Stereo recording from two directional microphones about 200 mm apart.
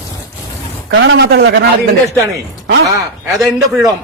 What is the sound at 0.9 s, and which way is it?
Speech, 60° right (ahead or behind).